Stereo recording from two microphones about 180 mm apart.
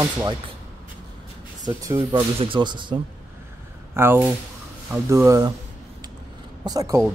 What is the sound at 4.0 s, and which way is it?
Speech, 10° right (ahead or behind).